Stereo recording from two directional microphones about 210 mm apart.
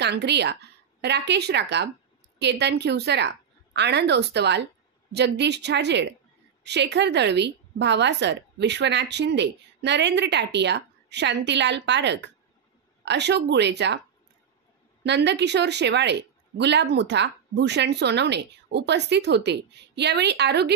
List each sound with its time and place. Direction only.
0.0 s a woman's voice: 55° right (ahead or behind)
15.0 s a woman's voice: 55° right (ahead or behind)